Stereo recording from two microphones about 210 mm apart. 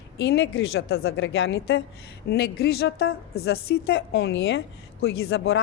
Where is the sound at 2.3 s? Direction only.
50° left (ahead or behind).